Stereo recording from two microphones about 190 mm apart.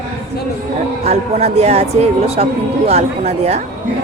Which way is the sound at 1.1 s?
35° right (ahead or behind).